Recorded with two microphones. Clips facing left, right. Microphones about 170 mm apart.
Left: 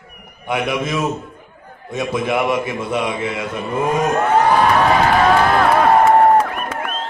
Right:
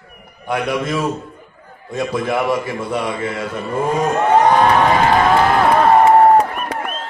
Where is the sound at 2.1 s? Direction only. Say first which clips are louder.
Even; 20° left (ahead or behind).